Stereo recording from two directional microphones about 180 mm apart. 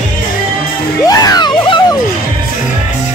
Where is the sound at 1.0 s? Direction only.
20° left (ahead or behind).